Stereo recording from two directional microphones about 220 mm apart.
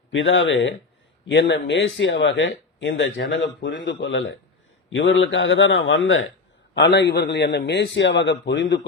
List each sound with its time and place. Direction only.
0.1 s a man's voice: 60° left (ahead or behind)